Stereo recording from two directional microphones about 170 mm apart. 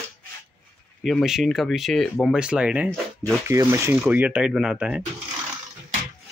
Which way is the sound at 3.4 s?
15° right (ahead or behind).